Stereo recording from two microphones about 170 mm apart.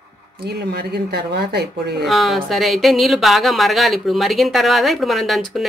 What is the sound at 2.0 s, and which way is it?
Speech, centre (ahead or behind).